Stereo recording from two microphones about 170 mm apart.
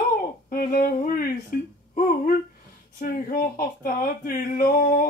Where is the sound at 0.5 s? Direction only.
55° left (ahead or behind).